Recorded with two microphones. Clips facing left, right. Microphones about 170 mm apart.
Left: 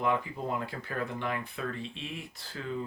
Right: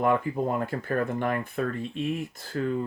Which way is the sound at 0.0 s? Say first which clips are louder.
Right 6 dB; 50° right (ahead or behind).